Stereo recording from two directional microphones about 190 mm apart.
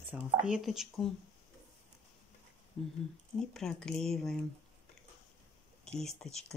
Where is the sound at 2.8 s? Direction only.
5° left (ahead or behind).